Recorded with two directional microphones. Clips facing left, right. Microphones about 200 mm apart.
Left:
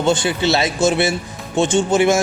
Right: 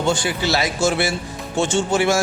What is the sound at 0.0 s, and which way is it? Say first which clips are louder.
A man's voice: left 4 dB; 20° left (ahead or behind).